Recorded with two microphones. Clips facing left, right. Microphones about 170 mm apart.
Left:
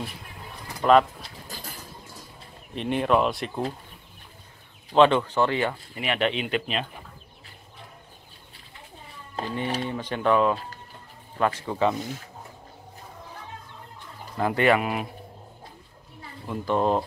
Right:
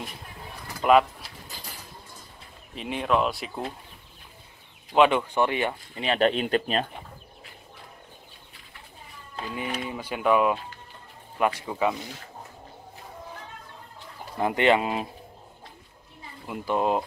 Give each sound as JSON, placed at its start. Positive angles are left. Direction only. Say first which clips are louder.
{"t": 0.8, "sound": "speech", "louder": "left 1 dB", "side_deg": -15}
{"t": 2.7, "sound": "speech", "louder": "left 3 dB", "side_deg": 0}
{"t": 4.9, "sound": "speech", "louder": "left 2 dB", "side_deg": -10}
{"t": 5.9, "sound": "speech", "louder": "right 4 dB", "side_deg": -35}
{"t": 9.4, "sound": "speech", "louder": "left 3 dB", "side_deg": 35}
{"t": 9.8, "sound": "speech", "louder": "right 1 dB", "side_deg": -10}
{"t": 14.4, "sound": "speech", "louder": "even", "side_deg": -20}
{"t": 16.4, "sound": "speech", "louder": "left 2 dB", "side_deg": -10}